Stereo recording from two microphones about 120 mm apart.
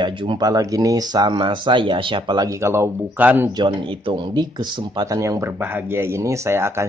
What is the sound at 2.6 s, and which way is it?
Speech, 20° right (ahead or behind).